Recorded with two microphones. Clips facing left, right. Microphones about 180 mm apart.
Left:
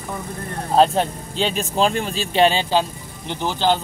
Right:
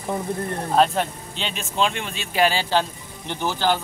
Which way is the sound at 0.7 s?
30° left (ahead or behind).